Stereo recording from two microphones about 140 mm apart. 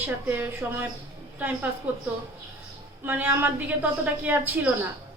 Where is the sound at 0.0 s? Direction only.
15° right (ahead or behind).